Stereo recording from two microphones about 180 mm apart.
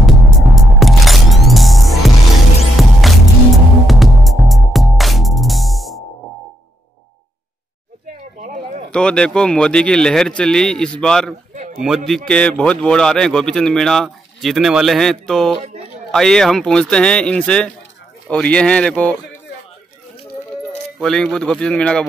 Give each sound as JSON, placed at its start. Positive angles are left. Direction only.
{"t": 0.0, "sound": "music", "side_deg": 0}
{"t": 8.4, "sound": "a sound", "side_deg": -40}
{"t": 8.9, "sound": "a man's voice", "side_deg": 5}
{"t": 11.5, "sound": "a sound", "side_deg": -40}
{"t": 11.8, "sound": "a man's voice", "side_deg": 0}
{"t": 21.0, "sound": "a man's voice", "side_deg": 5}